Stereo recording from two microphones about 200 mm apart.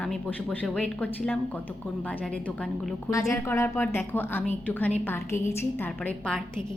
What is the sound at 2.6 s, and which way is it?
A woman's voice, 5° left (ahead or behind).